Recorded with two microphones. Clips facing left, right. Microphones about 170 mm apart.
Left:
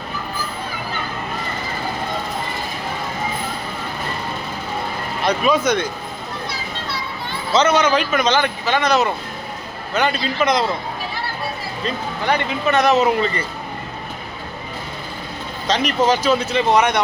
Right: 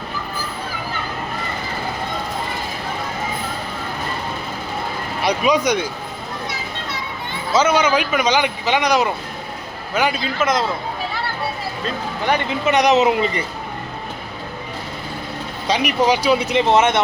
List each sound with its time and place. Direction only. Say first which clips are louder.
5.2 s speech: even; 15° right (ahead or behind)
7.5 s a man's voice: even; 10° right (ahead or behind)
12.2 s speech: right 1 dB; 20° right (ahead or behind)
15.6 s speech: even; 10° right (ahead or behind)